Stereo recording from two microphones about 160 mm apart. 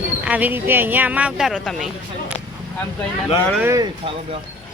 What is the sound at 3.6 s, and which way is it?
Speech, 15° right (ahead or behind).